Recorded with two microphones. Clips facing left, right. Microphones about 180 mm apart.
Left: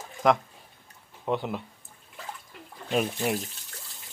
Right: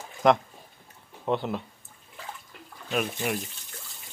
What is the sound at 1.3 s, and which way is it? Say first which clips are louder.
Speech: right 1 dB; 5° left (ahead or behind).